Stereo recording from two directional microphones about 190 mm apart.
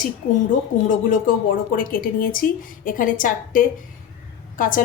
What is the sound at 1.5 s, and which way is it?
A woman's voice, 45° left (ahead or behind).